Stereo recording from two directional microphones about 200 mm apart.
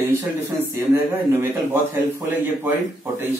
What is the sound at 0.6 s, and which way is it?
A man's voice, 10° right (ahead or behind).